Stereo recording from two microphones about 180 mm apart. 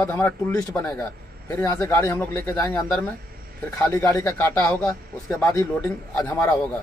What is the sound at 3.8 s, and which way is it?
Speech, 20° left (ahead or behind).